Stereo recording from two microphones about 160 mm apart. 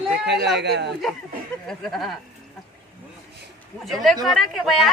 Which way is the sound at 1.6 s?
5° left (ahead or behind).